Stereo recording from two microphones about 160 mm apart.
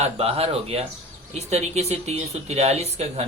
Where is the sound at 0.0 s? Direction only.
40° right (ahead or behind).